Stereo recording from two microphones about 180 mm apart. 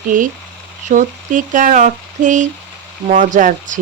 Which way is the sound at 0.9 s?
45° right (ahead or behind).